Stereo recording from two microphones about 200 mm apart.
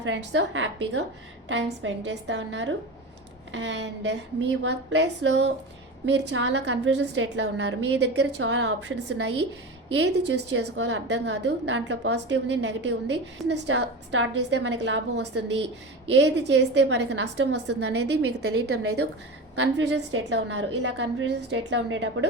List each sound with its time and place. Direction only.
0.0 s a woman's voice: 65° right (ahead or behind)